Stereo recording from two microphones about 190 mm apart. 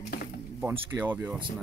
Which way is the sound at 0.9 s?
10° right (ahead or behind).